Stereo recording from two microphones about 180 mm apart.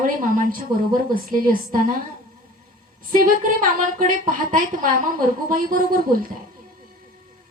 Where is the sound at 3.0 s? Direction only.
50° right (ahead or behind).